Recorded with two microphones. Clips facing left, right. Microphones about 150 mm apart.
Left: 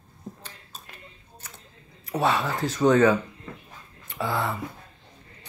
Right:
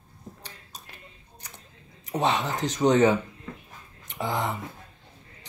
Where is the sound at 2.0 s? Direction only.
20° right (ahead or behind).